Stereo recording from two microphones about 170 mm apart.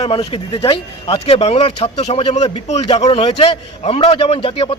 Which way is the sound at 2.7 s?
40° left (ahead or behind).